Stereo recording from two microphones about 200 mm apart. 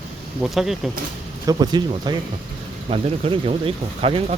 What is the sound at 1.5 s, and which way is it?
Speech, 20° right (ahead or behind).